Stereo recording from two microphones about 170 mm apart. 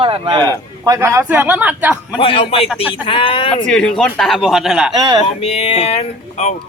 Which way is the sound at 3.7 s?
5° left (ahead or behind).